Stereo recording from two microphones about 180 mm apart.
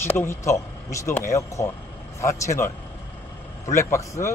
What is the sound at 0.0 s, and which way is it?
A man's voice, 15° left (ahead or behind).